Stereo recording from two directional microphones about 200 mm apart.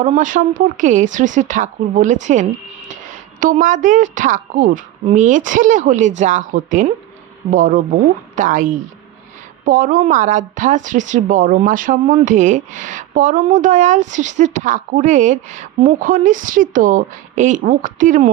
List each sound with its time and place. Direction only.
0.0 s speech: 40° right (ahead or behind)